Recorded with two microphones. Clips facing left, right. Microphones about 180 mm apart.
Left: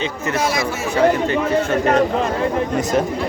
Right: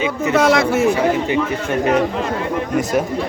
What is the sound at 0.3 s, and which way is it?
Speech, 60° right (ahead or behind).